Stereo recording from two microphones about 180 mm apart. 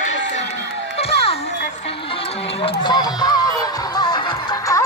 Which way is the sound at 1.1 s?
35° left (ahead or behind).